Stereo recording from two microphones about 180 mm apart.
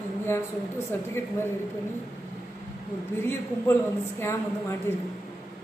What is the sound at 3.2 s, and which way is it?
Speech, 15° left (ahead or behind).